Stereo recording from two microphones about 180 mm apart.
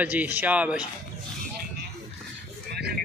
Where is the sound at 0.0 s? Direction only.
10° right (ahead or behind).